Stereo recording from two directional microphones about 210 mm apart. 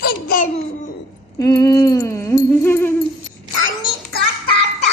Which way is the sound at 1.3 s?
15° left (ahead or behind).